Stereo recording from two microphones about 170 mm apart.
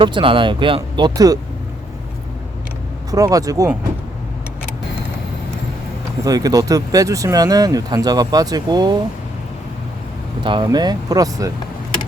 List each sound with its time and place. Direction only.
0.0 s speech: 30° right (ahead or behind)
3.1 s speech: 20° right (ahead or behind)
6.2 s speech: 20° right (ahead or behind)
10.4 s speech: 30° right (ahead or behind)